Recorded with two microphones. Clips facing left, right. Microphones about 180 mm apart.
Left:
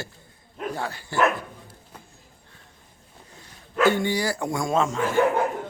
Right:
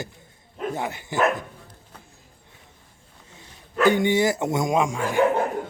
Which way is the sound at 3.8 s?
20° right (ahead or behind).